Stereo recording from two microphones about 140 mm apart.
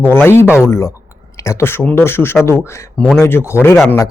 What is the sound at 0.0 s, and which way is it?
Speech, 15° left (ahead or behind).